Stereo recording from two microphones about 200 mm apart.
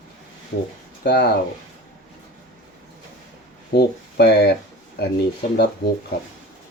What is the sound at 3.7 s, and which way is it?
Speech, 55° left (ahead or behind).